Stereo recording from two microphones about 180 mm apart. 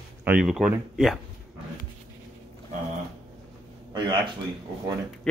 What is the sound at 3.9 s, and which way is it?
Speech, 25° right (ahead or behind).